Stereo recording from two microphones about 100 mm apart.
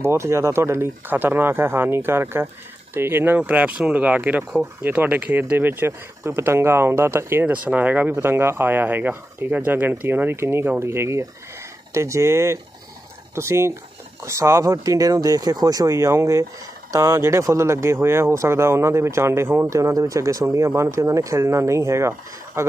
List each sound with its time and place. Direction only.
0.0 s speech: 25° right (ahead or behind)
19.7 s speech: 35° right (ahead or behind)